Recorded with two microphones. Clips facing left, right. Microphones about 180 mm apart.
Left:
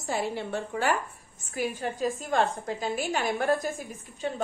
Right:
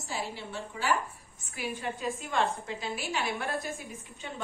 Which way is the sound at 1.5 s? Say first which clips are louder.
Left 5 dB; 40° left (ahead or behind).